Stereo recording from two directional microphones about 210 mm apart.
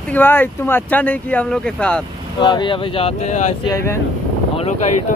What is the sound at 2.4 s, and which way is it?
Speech, 20° left (ahead or behind).